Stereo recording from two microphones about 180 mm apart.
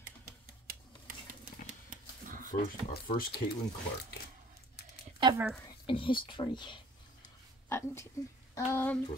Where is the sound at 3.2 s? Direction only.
65° left (ahead or behind).